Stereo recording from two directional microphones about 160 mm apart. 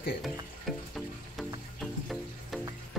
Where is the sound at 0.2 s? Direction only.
Centre (ahead or behind).